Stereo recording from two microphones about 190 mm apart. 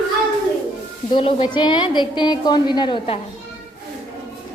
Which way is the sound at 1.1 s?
25° left (ahead or behind).